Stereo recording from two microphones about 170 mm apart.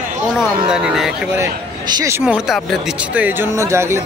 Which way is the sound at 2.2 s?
5° right (ahead or behind).